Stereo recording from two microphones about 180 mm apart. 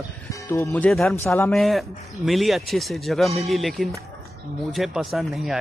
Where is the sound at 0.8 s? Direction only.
Centre (ahead or behind).